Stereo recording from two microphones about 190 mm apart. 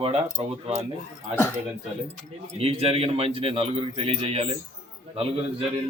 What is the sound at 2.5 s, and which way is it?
A man's voice, 30° right (ahead or behind).